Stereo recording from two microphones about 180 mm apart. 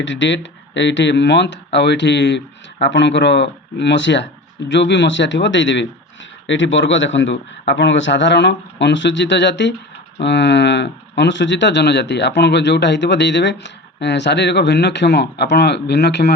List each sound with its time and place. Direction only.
0.0 s speech: 90° left; by 16.3 s 70° left (ahead or behind)